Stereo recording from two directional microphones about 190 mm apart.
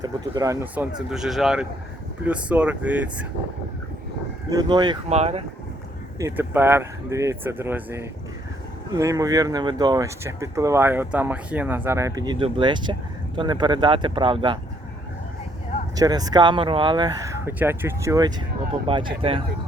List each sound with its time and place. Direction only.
0.0 s speech: 20° right (ahead or behind)
4.4 s speech: 20° right (ahead or behind)
5.0 s speech: 35° right (ahead or behind)
6.1 s speech: 15° right (ahead or behind)
16.0 s speech: 20° right (ahead or behind)